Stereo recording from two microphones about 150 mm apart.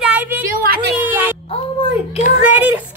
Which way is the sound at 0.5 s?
80° right.